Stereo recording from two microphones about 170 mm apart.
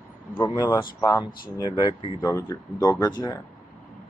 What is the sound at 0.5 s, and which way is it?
Speech, 25° left (ahead or behind).